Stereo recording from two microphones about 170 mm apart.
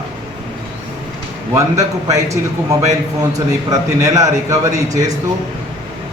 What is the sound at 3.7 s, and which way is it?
A man's voice, 20° right (ahead or behind).